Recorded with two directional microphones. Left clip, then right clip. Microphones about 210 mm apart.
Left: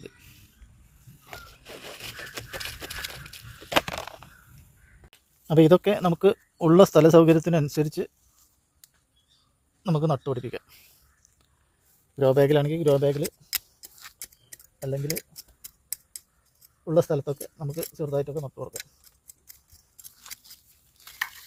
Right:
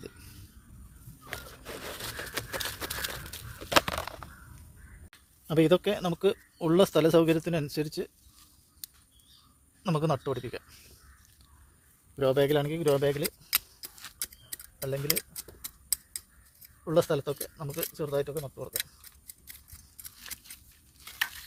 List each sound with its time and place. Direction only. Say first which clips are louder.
0.0 s a sound: left 1 dB; centre (ahead or behind)
1.7 s a sound: right 1 dB; 15° right (ahead or behind)
5.5 s speech: left 6 dB; 30° left (ahead or behind)
9.8 s speech: left 3 dB; 20° left (ahead or behind)
12.1 s speech: left 5 dB; 30° left (ahead or behind)
14.2 s a sound: right 5 dB; centre (ahead or behind)
16.8 s speech: left 3 dB; 25° left (ahead or behind)
17.7 s speech: left 3 dB; 5° left (ahead or behind)
17.9 s speech: left 3 dB; 30° left (ahead or behind)
18.5 s speech: even; centre (ahead or behind)